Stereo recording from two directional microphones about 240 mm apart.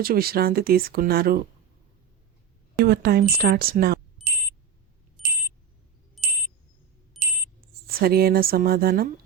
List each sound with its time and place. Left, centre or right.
0.0 s speech: right
2.7 s speech: right
6.2 s a sound: centre
7.9 s speech: right